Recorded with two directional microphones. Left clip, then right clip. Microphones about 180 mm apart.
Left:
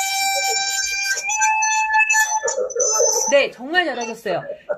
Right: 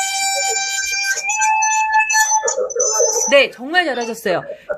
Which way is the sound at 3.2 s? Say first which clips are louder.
Right 4 dB; 30° right (ahead or behind).